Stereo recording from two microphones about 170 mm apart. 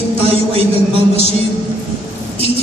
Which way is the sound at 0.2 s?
35° right (ahead or behind).